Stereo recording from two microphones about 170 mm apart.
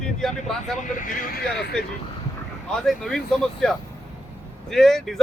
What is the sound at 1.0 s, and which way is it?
Speech, 55° left (ahead or behind).